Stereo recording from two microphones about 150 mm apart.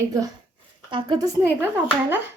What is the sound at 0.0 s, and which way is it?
A woman's voice, 25° right (ahead or behind).